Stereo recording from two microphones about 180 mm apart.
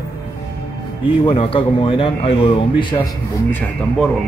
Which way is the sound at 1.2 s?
30° left (ahead or behind).